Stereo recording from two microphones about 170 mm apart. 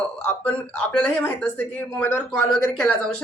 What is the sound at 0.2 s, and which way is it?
Speech, 10° left (ahead or behind).